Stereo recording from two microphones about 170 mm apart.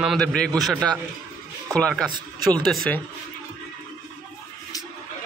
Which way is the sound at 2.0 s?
25° right (ahead or behind).